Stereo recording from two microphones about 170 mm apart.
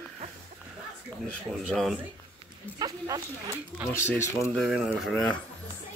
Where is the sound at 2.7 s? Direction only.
20° right (ahead or behind).